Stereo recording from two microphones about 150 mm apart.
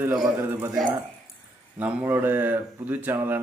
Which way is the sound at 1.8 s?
10° right (ahead or behind).